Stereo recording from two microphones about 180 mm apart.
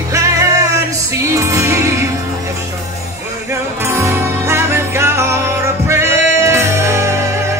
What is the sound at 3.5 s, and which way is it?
Music, 15° right (ahead or behind).